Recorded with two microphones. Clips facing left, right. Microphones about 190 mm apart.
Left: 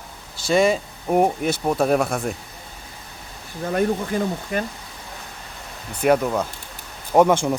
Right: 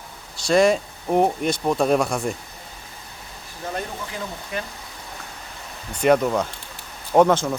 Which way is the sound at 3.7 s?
50° left (ahead or behind).